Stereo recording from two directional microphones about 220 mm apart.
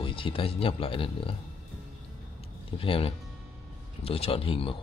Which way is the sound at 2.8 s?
25° left (ahead or behind).